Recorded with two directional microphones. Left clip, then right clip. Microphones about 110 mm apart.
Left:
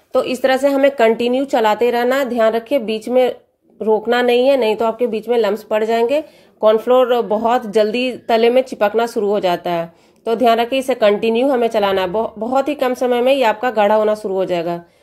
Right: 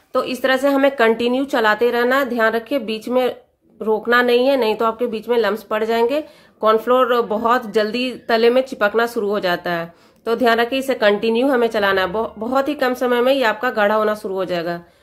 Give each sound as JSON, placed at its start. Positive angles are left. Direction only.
{"t": 0.1, "sound": "a woman's voice", "side_deg": 30}
{"t": 0.7, "sound": "speech", "side_deg": 15}